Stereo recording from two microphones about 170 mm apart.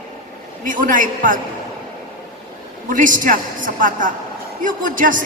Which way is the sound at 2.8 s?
50° right (ahead or behind).